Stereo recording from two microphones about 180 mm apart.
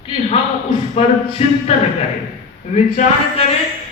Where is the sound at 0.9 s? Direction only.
35° left (ahead or behind).